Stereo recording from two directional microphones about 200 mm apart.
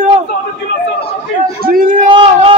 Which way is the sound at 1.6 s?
45° right (ahead or behind).